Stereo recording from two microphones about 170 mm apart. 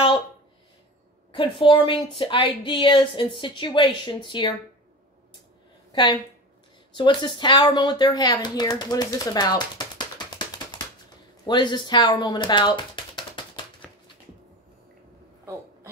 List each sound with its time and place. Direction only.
1.3 s speech: 30° left (ahead or behind)
5.9 s a sound: 25° left (ahead or behind)
7.0 s speech: 30° left (ahead or behind)
11.4 s typing: 25° left (ahead or behind)